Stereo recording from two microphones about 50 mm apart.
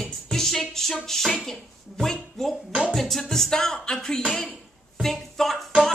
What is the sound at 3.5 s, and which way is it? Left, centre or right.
Speech, centre.